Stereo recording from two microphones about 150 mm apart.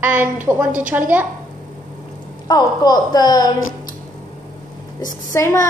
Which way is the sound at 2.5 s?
30° left (ahead or behind).